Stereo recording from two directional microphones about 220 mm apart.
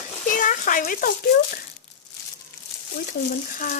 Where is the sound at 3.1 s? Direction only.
40° left (ahead or behind).